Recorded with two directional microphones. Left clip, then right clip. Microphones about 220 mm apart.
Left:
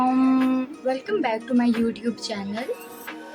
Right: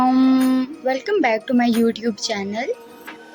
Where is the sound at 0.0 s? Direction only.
15° right (ahead or behind).